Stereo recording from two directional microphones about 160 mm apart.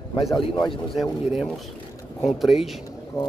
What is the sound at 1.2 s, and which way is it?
Speech, 5° right (ahead or behind).